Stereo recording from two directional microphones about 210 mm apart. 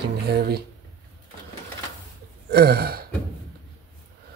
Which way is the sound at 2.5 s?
50° right (ahead or behind).